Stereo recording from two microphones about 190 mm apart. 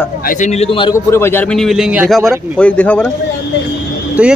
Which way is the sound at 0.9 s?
15° left (ahead or behind).